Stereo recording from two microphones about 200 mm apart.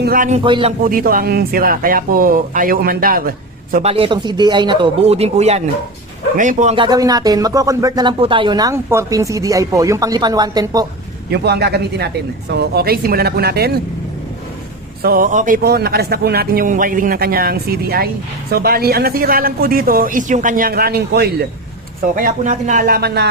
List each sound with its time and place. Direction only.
0.0 s speech: 45° right (ahead or behind)
0.4 s speech: 25° right (ahead or behind)
0.9 s speech: 45° right (ahead or behind)
3.8 s speech: 30° right (ahead or behind)
6.7 s speech: 20° right (ahead or behind)
11.3 s speech: 55° right (ahead or behind)
15.0 s speech: 45° right (ahead or behind)
22.1 s speech: 40° right (ahead or behind)